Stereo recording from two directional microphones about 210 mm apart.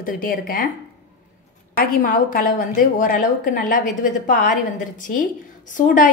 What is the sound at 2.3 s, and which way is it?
A woman's voice, 40° left (ahead or behind).